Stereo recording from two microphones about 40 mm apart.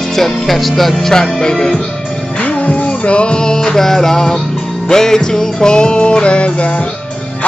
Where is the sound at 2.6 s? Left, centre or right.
Left.